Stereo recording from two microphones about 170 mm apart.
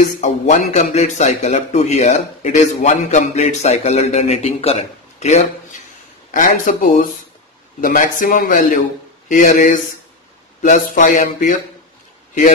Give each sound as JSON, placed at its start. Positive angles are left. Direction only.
{"t": 0.2, "sound": "a man's voice", "side_deg": 45}